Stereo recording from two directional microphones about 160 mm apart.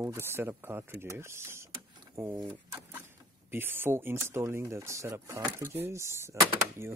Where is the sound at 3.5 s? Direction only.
15° right (ahead or behind).